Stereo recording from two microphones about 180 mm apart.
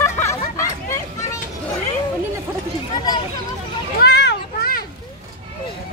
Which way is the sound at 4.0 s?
70° left (ahead or behind).